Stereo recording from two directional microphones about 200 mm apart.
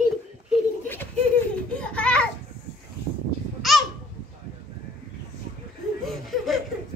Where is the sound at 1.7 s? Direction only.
5° left (ahead or behind).